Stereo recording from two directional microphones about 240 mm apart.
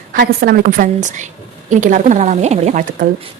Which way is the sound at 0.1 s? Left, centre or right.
Right.